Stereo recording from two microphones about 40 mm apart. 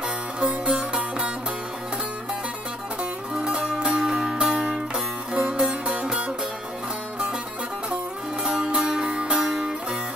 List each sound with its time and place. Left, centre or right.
0.7 s music: right
3.0 s music: centre
8.5 s music: right